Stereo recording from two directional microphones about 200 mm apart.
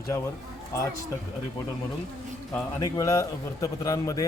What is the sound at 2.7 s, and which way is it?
Speech, 20° left (ahead or behind).